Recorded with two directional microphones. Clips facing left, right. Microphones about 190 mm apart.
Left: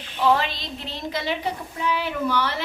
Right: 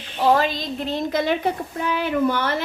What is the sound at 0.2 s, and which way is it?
A woman's voice, 40° right (ahead or behind).